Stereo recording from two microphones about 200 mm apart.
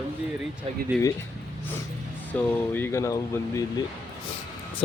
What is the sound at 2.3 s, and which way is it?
Speech, 10° left (ahead or behind).